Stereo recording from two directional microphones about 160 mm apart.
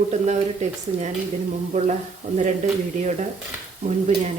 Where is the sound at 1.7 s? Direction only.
45° right (ahead or behind).